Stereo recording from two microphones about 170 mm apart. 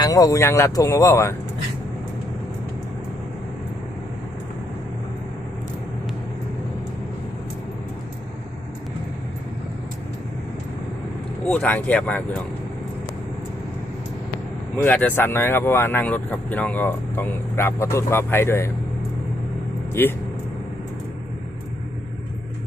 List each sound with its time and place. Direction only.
0.0 s speech: 20° left (ahead or behind)
11.4 s speech: 10° left (ahead or behind)
14.8 s speech: 10° left (ahead or behind)
19.9 s speech: 10° left (ahead or behind)